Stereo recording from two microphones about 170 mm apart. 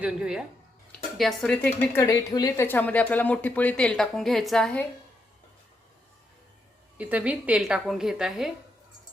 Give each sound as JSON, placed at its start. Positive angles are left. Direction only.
{"t": 0.0, "sound": "speech", "side_deg": -5}
{"t": 2.0, "sound": "speech", "side_deg": 20}
{"t": 6.9, "sound": "a woman's voice", "side_deg": -10}